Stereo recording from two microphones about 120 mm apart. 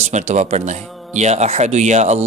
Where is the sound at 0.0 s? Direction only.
70° right (ahead or behind).